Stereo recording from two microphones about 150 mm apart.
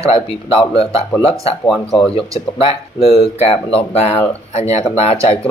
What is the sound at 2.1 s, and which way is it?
Speech, 40° left (ahead or behind).